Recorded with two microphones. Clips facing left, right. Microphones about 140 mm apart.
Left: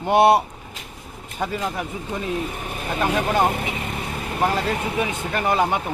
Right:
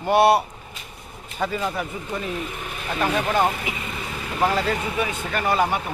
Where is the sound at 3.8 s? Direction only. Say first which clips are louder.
Left 3 dB; 55° left (ahead or behind).